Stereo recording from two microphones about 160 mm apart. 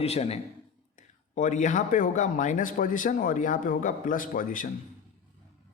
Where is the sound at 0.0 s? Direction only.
40° left (ahead or behind).